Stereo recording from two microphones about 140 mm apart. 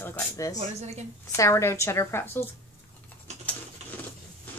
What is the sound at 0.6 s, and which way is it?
Speech, 55° right (ahead or behind).